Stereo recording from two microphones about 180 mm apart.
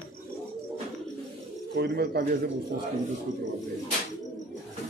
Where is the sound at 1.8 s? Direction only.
60° right (ahead or behind).